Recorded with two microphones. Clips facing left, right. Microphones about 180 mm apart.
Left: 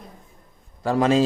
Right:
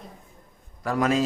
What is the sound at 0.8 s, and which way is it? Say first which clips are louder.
Speech: left 4 dB; 30° left (ahead or behind).